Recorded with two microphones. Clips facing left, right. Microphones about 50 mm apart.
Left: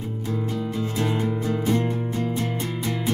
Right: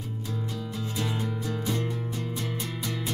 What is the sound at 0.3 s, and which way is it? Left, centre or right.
Music, left.